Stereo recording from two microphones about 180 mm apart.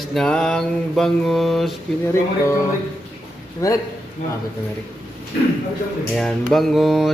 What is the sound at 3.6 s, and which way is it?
Speech, 15° left (ahead or behind).